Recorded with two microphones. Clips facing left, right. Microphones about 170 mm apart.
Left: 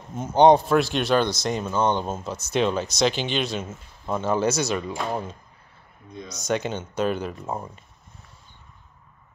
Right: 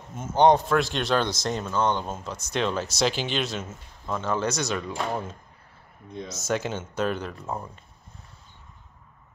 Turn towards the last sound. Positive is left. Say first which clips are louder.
# left 2 dB
turn(degrees=15)  # may be behind; listen again after turning